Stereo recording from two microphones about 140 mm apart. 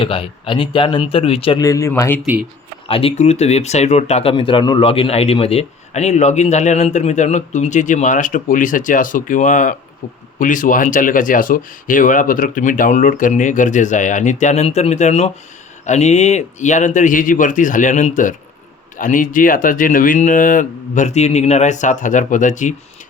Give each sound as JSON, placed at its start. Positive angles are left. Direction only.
{"t": 0.0, "sound": "speech", "side_deg": 40}
{"t": 1.6, "sound": "speech", "side_deg": 25}
{"t": 2.8, "sound": "speech", "side_deg": 40}